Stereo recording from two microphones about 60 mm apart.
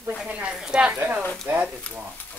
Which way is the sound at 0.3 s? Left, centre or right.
Centre.